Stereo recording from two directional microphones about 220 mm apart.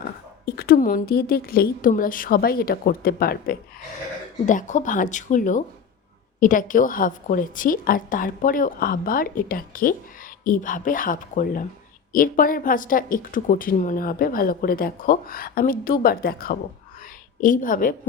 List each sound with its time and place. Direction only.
0.4 s a woman's voice: 40° left (ahead or behind)